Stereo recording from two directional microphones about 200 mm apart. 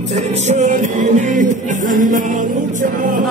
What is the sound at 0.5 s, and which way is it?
Music, 35° right (ahead or behind).